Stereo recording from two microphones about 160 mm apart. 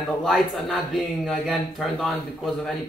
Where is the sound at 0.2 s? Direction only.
Centre (ahead or behind).